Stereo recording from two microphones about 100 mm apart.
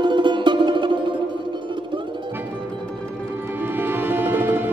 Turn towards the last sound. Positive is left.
turn(degrees=-20)  # may be behind; listen again after turning